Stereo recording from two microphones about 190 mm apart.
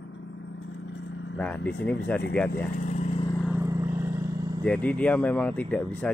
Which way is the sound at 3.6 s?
15° right (ahead or behind).